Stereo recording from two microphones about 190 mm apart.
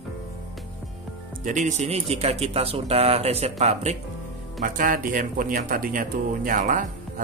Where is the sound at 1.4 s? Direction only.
40° right (ahead or behind).